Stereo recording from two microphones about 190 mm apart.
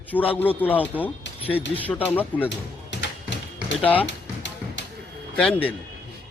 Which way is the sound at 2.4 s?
70° left (ahead or behind).